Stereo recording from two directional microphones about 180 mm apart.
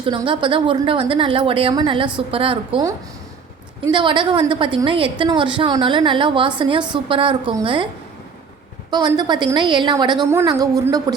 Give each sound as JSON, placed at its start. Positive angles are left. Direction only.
{"t": 0.0, "sound": "a woman's voice", "side_deg": -30}
{"t": 8.9, "sound": "a woman's voice", "side_deg": -20}